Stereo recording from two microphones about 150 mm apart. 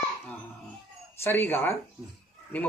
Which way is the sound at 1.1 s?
15° left (ahead or behind).